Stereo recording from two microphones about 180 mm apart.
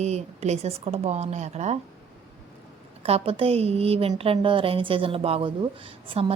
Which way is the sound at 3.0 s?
35° right (ahead or behind).